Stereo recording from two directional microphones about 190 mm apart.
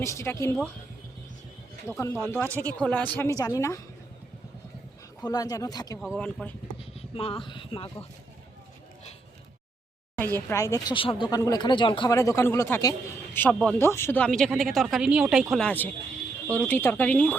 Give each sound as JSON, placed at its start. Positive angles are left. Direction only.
{"t": 0.0, "sound": "speech", "side_deg": 15}
{"t": 2.0, "sound": "speech", "side_deg": 15}
{"t": 5.2, "sound": "speech", "side_deg": 20}
{"t": 6.0, "sound": "speech", "side_deg": 5}
{"t": 6.7, "sound": "a sound", "side_deg": 30}
{"t": 10.3, "sound": "speech", "side_deg": 15}